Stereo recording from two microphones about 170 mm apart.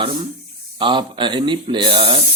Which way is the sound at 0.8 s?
30° right (ahead or behind).